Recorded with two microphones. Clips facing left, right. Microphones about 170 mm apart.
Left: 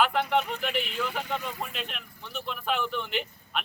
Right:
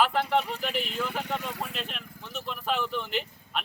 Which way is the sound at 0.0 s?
Centre (ahead or behind).